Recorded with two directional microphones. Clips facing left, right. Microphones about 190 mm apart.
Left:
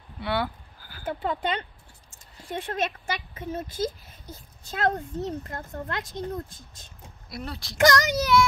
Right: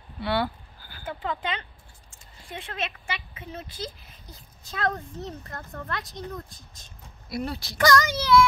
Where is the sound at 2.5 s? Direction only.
45° left (ahead or behind).